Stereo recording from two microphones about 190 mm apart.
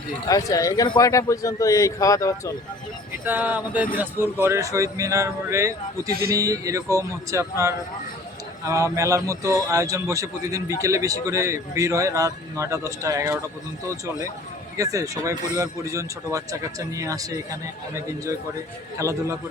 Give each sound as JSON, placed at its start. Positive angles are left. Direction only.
{"t": 0.3, "sound": "a man's voice", "side_deg": 20}
{"t": 3.2, "sound": "speech", "side_deg": -10}